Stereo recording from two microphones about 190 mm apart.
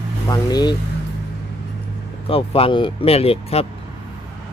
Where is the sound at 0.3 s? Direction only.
20° left (ahead or behind).